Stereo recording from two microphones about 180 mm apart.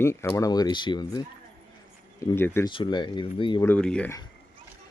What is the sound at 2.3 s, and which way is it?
Speech, 15° left (ahead or behind).